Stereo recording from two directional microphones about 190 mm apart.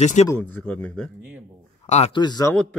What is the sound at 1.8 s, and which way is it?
Speech, 35° left (ahead or behind).